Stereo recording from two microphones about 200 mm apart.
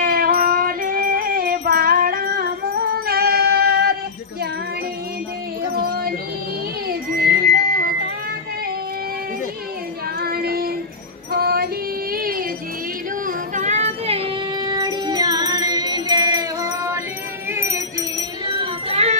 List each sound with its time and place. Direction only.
0.0 s music: 45° right (ahead or behind)
7.2 s a sound: 50° right (ahead or behind)
10.2 s child singing: 50° right (ahead or behind)
11.3 s female singing: 50° right (ahead or behind)
13.6 s music: 35° right (ahead or behind); by 17.0 s 15° right (ahead or behind)
17.5 s wind chime: 10° right (ahead or behind)
18.6 s music: 30° right (ahead or behind)